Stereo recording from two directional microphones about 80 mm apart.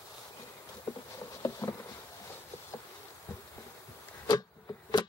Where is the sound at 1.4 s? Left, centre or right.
Left.